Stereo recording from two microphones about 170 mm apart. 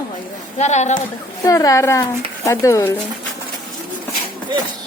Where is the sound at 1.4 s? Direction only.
20° left (ahead or behind).